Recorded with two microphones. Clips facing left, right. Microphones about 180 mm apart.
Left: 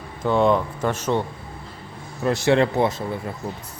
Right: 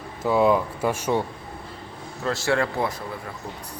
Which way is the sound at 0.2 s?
5° right (ahead or behind).